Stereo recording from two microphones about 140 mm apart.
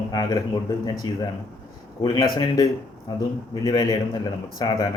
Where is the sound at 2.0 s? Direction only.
30° left (ahead or behind).